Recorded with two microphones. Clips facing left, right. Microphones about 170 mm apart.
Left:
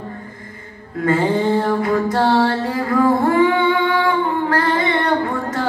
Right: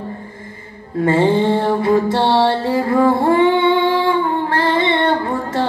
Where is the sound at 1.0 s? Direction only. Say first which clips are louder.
Right 3 dB; 25° right (ahead or behind).